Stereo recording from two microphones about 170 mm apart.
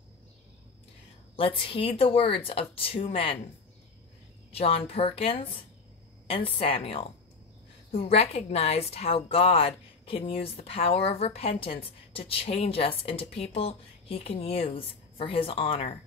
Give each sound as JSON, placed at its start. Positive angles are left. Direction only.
{"t": 1.3, "sound": "a woman's voice", "side_deg": 30}
{"t": 4.5, "sound": "a woman's voice", "side_deg": 35}